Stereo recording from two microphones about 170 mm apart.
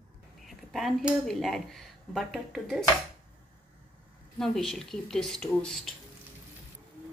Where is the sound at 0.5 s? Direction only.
Centre (ahead or behind).